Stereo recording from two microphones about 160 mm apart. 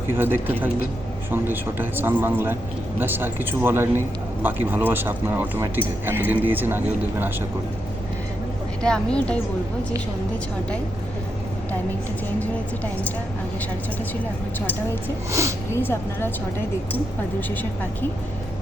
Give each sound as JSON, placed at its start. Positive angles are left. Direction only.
{"t": 0.1, "sound": "a man's voice", "side_deg": -15}
{"t": 8.8, "sound": "a woman's voice", "side_deg": 5}
{"t": 15.3, "sound": "speech", "side_deg": -20}
{"t": 15.7, "sound": "a woman's voice", "side_deg": 15}